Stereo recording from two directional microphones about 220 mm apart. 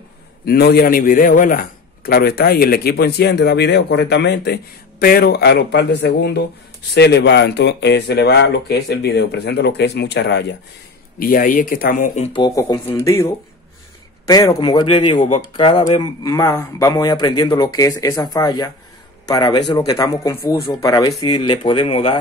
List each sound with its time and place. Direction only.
0.5 s a man's voice: 45° left (ahead or behind)
11.1 s speech: 40° left (ahead or behind)
12.3 s a man's voice: 20° left (ahead or behind)